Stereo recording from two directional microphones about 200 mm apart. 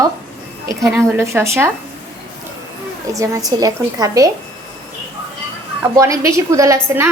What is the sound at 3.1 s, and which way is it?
A woman's voice, 15° right (ahead or behind).